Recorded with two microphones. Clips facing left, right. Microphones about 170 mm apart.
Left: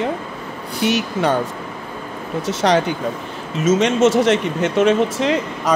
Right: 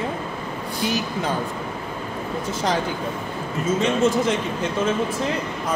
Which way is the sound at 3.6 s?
90° left.